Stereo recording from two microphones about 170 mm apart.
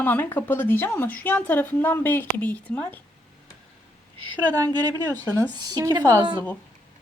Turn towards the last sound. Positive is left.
turn(degrees=-25)  # may be behind; listen again after turning